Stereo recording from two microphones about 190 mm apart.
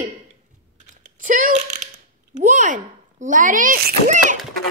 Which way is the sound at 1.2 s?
45° right (ahead or behind).